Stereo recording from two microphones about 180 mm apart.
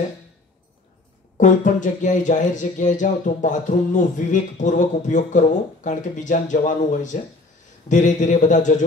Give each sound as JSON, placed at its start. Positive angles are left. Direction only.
{"t": 1.4, "sound": "speech", "side_deg": 45}